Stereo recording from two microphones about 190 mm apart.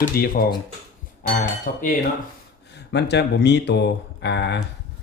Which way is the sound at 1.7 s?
50° left (ahead or behind).